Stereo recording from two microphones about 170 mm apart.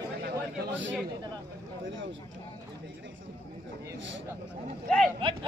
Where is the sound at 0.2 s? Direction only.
90° right.